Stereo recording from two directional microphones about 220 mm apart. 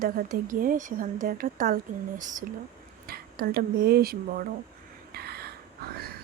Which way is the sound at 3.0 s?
45° right (ahead or behind).